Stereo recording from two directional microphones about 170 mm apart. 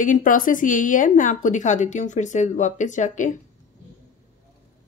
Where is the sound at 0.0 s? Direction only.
50° left (ahead or behind).